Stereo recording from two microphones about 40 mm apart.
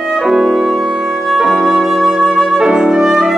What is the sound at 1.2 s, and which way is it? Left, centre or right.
Flute, centre.